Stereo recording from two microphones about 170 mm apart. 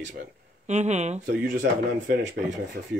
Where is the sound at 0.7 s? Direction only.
40° right (ahead or behind).